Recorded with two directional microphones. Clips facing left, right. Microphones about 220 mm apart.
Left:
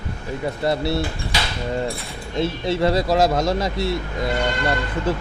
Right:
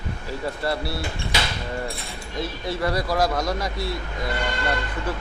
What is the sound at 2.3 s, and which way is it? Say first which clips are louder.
Speech: left 7 dB; 25° left (ahead or behind).